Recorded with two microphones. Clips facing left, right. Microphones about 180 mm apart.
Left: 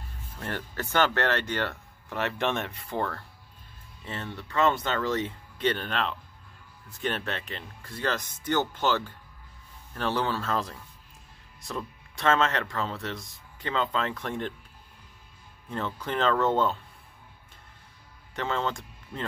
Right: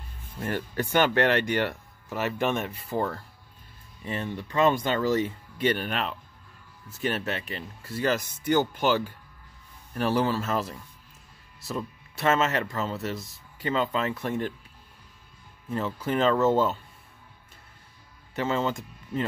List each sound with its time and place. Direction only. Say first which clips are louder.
0.4 s speech: right 5 dB; 10° right (ahead or behind)
15.7 s speech: right 4 dB; 5° right (ahead or behind)
18.3 s speech: right 3 dB; 5° right (ahead or behind)